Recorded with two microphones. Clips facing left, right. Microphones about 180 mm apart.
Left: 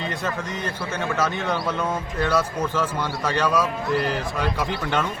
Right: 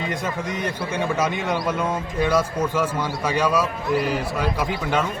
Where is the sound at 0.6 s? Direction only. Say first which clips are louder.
Right 4 dB; 10° right (ahead or behind).